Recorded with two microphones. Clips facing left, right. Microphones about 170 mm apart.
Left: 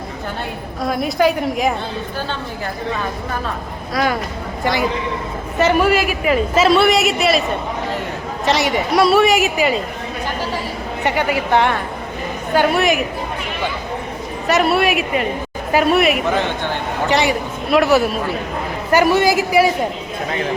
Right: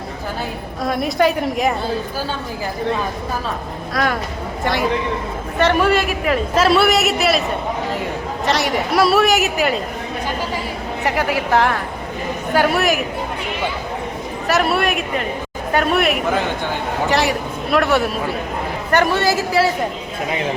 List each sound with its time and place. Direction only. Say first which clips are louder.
0.8 s a woman's voice: even; centre (ahead or behind)
3.9 s a woman's voice: left 2 dB; 5° left (ahead or behind)
8.4 s a woman's voice: left 2 dB; centre (ahead or behind)
11.0 s a woman's voice: left 1 dB; centre (ahead or behind)
14.4 s a woman's voice: left 2 dB; centre (ahead or behind)